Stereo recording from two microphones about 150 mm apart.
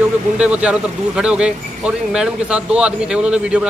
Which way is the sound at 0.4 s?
5° right (ahead or behind).